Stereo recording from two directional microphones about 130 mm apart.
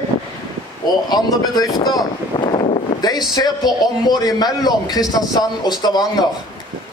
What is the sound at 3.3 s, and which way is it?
Speech, 30° left (ahead or behind).